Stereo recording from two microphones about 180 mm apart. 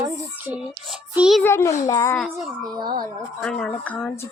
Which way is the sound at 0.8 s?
5° right (ahead or behind).